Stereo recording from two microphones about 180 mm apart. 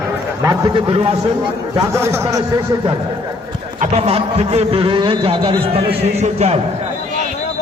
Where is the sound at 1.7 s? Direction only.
15° right (ahead or behind).